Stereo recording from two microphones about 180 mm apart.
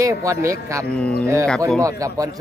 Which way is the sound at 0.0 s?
15° right (ahead or behind).